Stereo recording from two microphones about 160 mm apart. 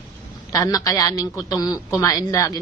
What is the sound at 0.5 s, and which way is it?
A woman's voice, 20° left (ahead or behind).